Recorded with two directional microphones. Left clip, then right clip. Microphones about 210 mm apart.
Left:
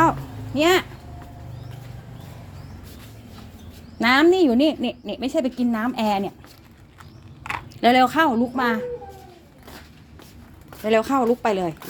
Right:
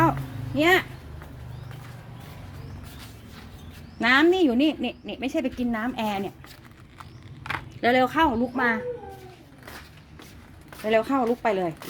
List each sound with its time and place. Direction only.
0.0 s a sound: 15° left (ahead or behind)
3.9 s speech: 25° left (ahead or behind)
7.8 s speech: 25° left (ahead or behind)
10.8 s a woman's voice: 15° left (ahead or behind)